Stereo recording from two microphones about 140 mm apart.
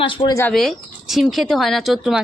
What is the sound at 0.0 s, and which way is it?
Speech, 35° left (ahead or behind).